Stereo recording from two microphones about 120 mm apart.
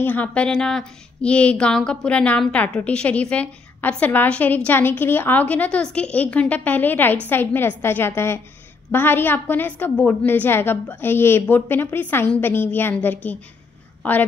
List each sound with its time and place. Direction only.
0.0 s a woman's voice: 15° left (ahead or behind)